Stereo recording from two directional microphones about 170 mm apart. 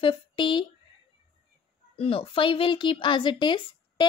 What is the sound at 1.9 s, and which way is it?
A woman's voice, 35° left (ahead or behind).